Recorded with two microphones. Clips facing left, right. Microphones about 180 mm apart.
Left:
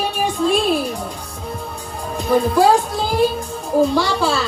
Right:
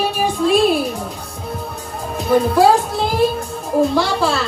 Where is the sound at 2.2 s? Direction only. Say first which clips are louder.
Right 2 dB; centre (ahead or behind).